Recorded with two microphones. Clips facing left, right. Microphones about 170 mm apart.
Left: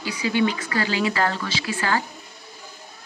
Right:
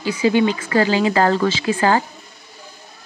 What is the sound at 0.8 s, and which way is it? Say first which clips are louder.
Speech: right 8 dB; 40° right (ahead or behind).